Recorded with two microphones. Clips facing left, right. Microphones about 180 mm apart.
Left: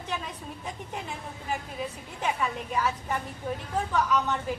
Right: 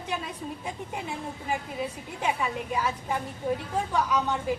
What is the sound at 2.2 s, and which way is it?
A woman's voice, 10° right (ahead or behind).